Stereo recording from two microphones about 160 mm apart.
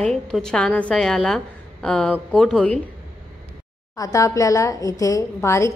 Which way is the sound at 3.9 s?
20° left (ahead or behind).